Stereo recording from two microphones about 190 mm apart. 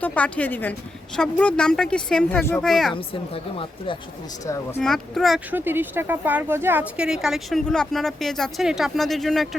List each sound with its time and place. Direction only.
0.0 s speech: 10° left (ahead or behind)
2.9 s speech: 30° left (ahead or behind)
4.8 s speech: centre (ahead or behind)